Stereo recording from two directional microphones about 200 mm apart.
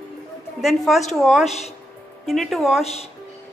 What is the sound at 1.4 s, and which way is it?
Speech, 35° left (ahead or behind).